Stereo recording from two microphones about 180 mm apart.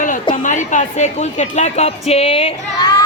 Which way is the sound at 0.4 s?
45° left (ahead or behind).